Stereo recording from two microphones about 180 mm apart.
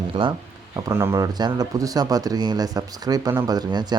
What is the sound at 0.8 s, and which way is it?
Speech, 15° right (ahead or behind).